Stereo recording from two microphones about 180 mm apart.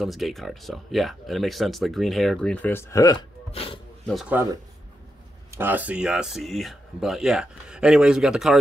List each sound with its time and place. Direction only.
0.0 s speech: centre (ahead or behind); by 3.8 s 30° left (ahead or behind)
4.1 s speech: centre (ahead or behind)
5.5 s speech: 10° right (ahead or behind)